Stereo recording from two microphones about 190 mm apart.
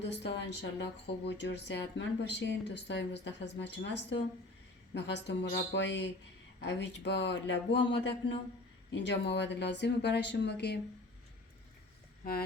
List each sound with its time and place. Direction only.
0.0 s speech: 65° left (ahead or behind)